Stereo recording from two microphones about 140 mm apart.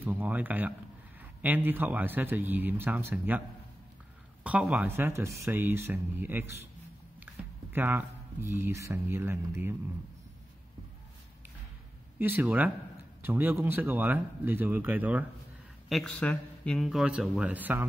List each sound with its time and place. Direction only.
0.0 s speech: 10° right (ahead or behind)
7.3 s a sound: 15° right (ahead or behind)
7.7 s speech: 15° right (ahead or behind)
12.2 s speech: 15° right (ahead or behind)
15.9 s a man's voice: 5° left (ahead or behind); by 17.8 s 10° right (ahead or behind)